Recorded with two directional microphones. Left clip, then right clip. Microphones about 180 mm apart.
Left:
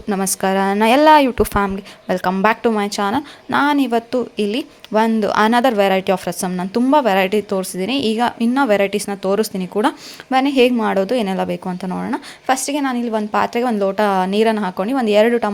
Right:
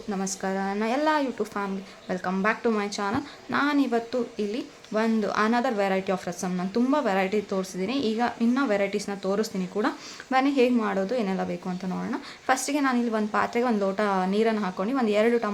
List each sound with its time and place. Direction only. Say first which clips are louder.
0.1 s a woman's voice: left 12 dB; 50° left (ahead or behind)
12.5 s speech: left 6 dB; 25° left (ahead or behind)